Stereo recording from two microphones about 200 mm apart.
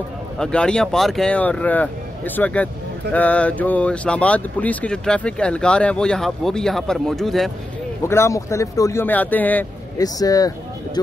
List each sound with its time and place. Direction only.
0.4 s speech: 5° left (ahead or behind)
8.1 s a man's voice: 15° left (ahead or behind)